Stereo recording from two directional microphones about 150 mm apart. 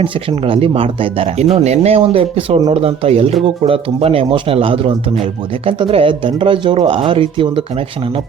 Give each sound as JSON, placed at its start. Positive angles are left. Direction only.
{"t": 0.0, "sound": "speech", "side_deg": -35}